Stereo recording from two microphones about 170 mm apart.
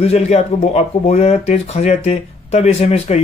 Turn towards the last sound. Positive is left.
turn(degrees=40)  # may be behind; listen again after turning